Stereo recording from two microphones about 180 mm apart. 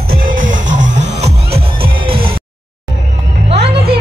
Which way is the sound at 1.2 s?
65° right (ahead or behind).